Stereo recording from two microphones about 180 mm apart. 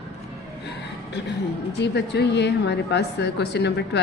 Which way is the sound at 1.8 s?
70° left (ahead or behind).